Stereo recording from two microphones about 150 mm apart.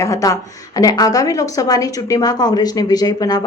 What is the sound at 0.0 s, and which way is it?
A woman's voice, 20° left (ahead or behind).